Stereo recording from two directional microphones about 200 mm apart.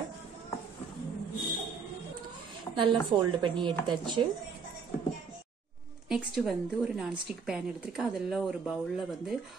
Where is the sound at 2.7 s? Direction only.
15° left (ahead or behind).